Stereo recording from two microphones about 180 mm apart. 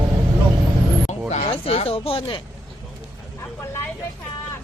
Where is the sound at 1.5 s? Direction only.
35° left (ahead or behind).